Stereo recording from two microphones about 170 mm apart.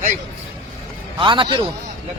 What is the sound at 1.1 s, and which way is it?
Speech, 30° right (ahead or behind).